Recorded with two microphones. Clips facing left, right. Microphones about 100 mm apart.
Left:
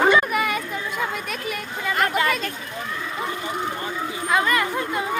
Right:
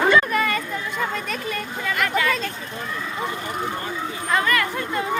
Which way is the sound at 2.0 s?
25° left (ahead or behind).